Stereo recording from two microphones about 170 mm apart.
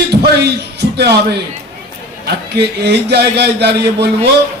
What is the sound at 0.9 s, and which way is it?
Speech, 75° right (ahead or behind).